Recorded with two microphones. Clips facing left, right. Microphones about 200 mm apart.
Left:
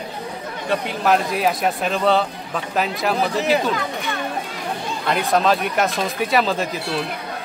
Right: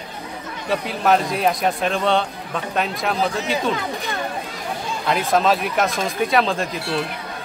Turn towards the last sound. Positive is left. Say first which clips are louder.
# even
turn(degrees=0)  # may be behind; listen again after turning